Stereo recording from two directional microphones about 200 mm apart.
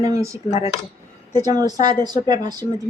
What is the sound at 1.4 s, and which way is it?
Speech, 20° right (ahead or behind).